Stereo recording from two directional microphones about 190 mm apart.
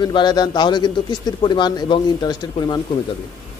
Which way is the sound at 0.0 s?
25° left (ahead or behind).